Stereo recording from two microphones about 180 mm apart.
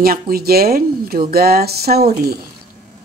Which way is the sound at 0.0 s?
55° right (ahead or behind).